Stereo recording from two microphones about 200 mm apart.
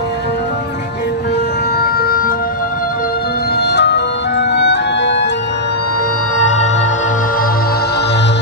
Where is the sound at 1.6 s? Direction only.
50° left (ahead or behind).